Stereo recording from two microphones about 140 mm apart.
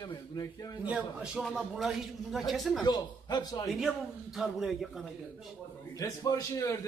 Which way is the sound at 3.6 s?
Centre (ahead or behind).